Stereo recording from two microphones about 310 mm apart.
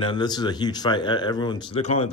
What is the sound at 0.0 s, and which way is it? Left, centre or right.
A man's voice, centre.